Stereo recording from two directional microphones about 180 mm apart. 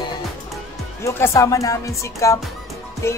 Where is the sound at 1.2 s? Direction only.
15° left (ahead or behind).